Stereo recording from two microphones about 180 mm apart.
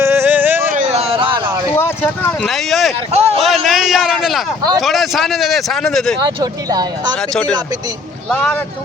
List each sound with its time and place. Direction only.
0.0 s a sound: 15° right (ahead or behind)
0.7 s a sound: 40° right (ahead or behind)
1.7 s speech: 10° left (ahead or behind)
3.1 s speech: 35° right (ahead or behind)
3.3 s speech: centre (ahead or behind)
6.1 s speech: 20° right (ahead or behind)
8.3 s speech: 5° left (ahead or behind)